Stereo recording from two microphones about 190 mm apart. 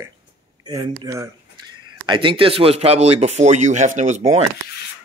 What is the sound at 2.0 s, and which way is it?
Speech, 25° right (ahead or behind).